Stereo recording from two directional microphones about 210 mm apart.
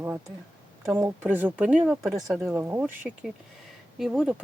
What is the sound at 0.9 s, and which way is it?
Speech, 15° right (ahead or behind).